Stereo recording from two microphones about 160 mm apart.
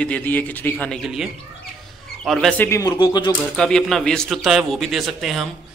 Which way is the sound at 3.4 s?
5° left (ahead or behind).